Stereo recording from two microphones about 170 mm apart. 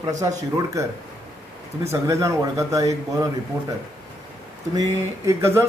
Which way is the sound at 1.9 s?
15° right (ahead or behind).